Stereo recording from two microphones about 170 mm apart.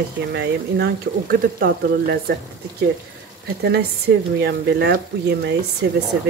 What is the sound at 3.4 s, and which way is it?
Speech, 70° right (ahead or behind).